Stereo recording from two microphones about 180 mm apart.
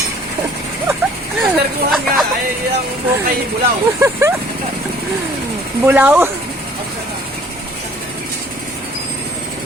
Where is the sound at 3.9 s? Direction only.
15° right (ahead or behind).